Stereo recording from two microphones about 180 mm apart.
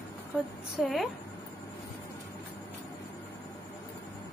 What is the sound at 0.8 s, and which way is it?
Speech, 5° right (ahead or behind).